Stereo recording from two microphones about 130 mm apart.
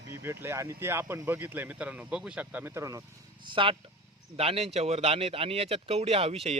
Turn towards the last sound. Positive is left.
turn(degrees=-50)  # may be behind; listen again after turning